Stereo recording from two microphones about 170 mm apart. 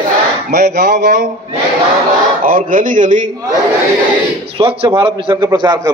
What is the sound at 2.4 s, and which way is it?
Speech, 55° right (ahead or behind).